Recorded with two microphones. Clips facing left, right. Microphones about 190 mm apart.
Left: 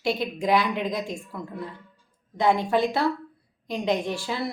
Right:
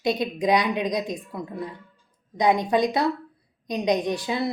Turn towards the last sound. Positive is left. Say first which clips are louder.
# right 3 dB
turn(degrees=-20)  # may be behind; listen again after turning